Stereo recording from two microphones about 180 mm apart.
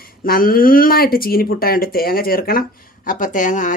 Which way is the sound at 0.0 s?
55° left (ahead or behind).